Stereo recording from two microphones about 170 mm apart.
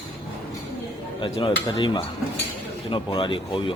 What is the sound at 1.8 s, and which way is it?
Speech, 30° left (ahead or behind).